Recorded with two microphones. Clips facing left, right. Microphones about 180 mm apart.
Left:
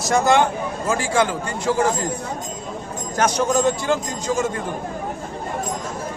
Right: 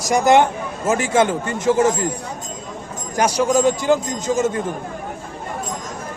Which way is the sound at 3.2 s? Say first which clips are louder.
Right 2 dB; 10° right (ahead or behind).